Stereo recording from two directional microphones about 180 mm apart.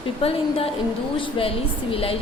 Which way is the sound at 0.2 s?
30° left (ahead or behind).